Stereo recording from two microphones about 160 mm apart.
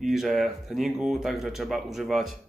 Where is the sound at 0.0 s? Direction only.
Centre (ahead or behind).